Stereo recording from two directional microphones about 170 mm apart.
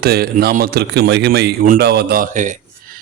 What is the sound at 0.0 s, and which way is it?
Speech, 65° right (ahead or behind).